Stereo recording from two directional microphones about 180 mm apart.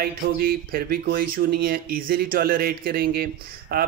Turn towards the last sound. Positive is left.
turn(degrees=-60)  # may be behind; listen again after turning